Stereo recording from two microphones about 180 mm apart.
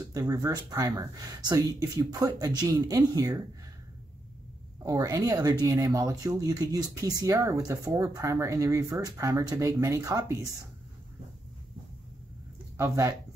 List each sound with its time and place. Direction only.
0.0 s speech: 20° right (ahead or behind)
4.8 s speech: 20° right (ahead or behind)
12.7 s speech: 15° right (ahead or behind)